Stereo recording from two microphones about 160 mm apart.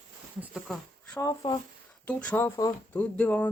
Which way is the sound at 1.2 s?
25° left (ahead or behind).